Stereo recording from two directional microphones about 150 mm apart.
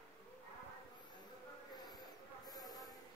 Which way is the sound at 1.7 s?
25° left (ahead or behind).